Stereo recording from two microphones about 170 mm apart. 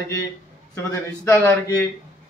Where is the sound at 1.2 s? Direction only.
15° left (ahead or behind).